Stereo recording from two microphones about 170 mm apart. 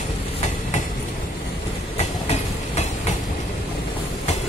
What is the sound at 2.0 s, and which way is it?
Train, 40° left (ahead or behind).